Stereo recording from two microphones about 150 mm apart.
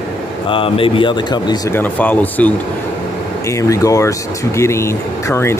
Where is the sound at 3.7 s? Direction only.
20° left (ahead or behind).